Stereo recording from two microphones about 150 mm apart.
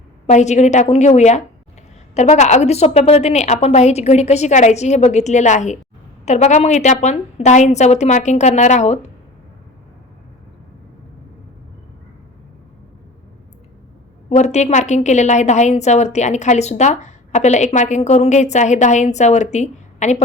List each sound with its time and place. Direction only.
0.3 s a woman's voice: 50° left (ahead or behind)
14.3 s a woman's voice: 50° left (ahead or behind)